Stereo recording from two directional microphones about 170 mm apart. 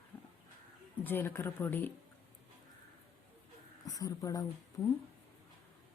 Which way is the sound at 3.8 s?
20° left (ahead or behind).